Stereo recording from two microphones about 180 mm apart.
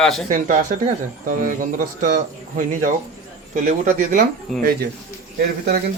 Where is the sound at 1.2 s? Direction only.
50° right (ahead or behind).